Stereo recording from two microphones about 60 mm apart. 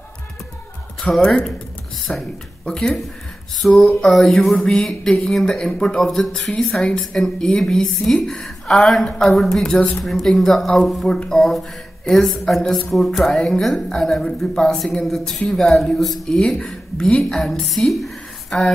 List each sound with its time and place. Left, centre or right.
1.2 s a woman's voice: centre
3.6 s a woman's voice: centre
5.1 s a woman's voice: centre
5.9 s a woman's voice: centre